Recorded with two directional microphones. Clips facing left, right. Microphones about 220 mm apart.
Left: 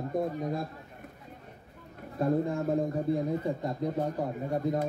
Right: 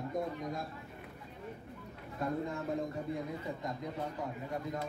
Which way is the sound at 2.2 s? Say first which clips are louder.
Left 8 dB; 35° left (ahead or behind).